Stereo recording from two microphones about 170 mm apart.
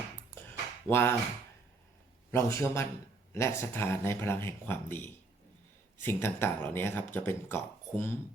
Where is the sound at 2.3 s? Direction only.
15° left (ahead or behind).